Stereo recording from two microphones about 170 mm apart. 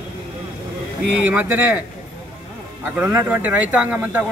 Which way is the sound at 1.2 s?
10° right (ahead or behind).